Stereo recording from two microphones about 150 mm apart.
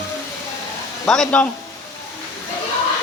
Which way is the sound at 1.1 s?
5° left (ahead or behind).